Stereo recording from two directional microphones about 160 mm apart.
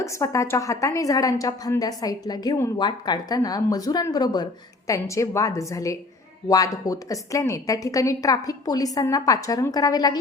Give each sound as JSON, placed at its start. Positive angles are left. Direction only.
{"t": 0.0, "sound": "a woman's voice", "side_deg": 20}